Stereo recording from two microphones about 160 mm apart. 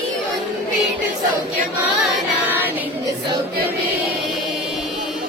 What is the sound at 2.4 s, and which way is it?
Child singing, 10° right (ahead or behind).